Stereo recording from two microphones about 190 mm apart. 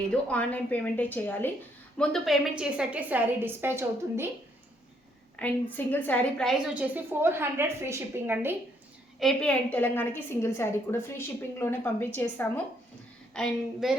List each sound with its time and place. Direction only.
0.3 s a woman's voice: 5° left (ahead or behind); by 4.3 s 10° right (ahead or behind)
5.4 s a woman's voice: 5° left (ahead or behind)
6.9 s a woman's voice: 10° right (ahead or behind)
9.1 s a woman's voice: centre (ahead or behind)